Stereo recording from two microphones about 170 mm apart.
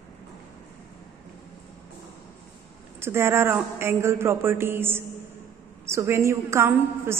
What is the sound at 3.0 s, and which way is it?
A woman's voice, 15° right (ahead or behind).